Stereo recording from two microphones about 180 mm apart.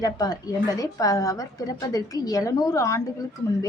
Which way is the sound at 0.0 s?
20° left (ahead or behind).